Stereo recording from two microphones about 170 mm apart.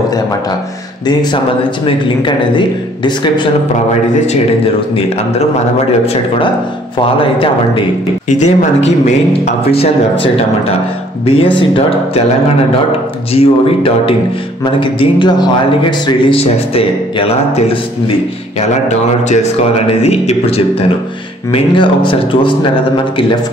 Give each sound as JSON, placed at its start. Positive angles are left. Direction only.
{"t": 1.0, "sound": "a man's voice", "side_deg": 30}
{"t": 7.2, "sound": "speech", "side_deg": 30}
{"t": 8.3, "sound": "speech", "side_deg": 40}
{"t": 13.3, "sound": "a man's voice", "side_deg": 35}
{"t": 19.9, "sound": "a man's voice", "side_deg": 35}